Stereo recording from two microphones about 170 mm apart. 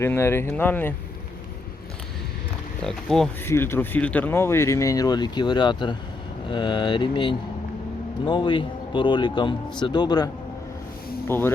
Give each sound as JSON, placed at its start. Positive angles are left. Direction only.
{"t": 0.0, "sound": "speech", "side_deg": 15}
{"t": 2.8, "sound": "speech", "side_deg": 0}
{"t": 3.4, "sound": "a man's voice", "side_deg": 15}
{"t": 11.3, "sound": "speech", "side_deg": 15}